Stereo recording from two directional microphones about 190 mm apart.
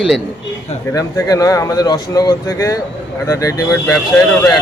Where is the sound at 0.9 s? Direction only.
15° left (ahead or behind).